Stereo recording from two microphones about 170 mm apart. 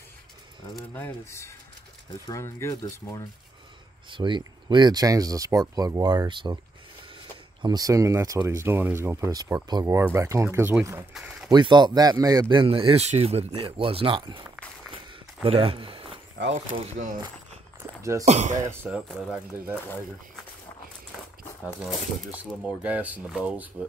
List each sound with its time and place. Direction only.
0.7 s speech: 10° left (ahead or behind)
4.1 s a man's voice: 25° right (ahead or behind)
7.6 s speech: 20° right (ahead or behind)
11.1 s a sound: 5° right (ahead or behind)
11.5 s a man's voice: 25° right (ahead or behind)
18.2 s speech: 45° right (ahead or behind)
18.9 s speech: 5° right (ahead or behind)
21.8 s speech: 5° right (ahead or behind)